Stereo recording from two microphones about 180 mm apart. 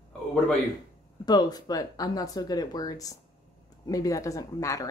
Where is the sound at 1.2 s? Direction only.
20° left (ahead or behind).